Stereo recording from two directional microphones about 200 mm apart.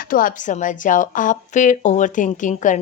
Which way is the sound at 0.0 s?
45° left (ahead or behind).